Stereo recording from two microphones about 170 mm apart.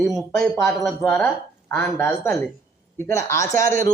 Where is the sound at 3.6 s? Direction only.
55° right (ahead or behind).